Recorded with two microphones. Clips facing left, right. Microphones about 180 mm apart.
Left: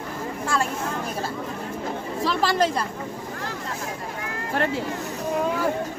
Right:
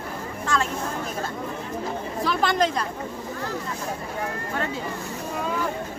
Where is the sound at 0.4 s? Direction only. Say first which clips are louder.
Even; 10° left (ahead or behind).